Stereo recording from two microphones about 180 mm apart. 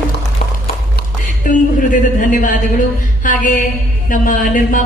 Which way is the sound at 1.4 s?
45° left (ahead or behind).